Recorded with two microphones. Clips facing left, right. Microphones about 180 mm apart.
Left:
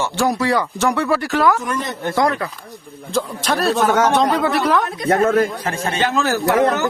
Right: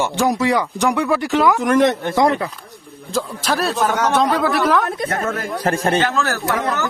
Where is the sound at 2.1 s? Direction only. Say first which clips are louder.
Left 1 dB; 25° right (ahead or behind).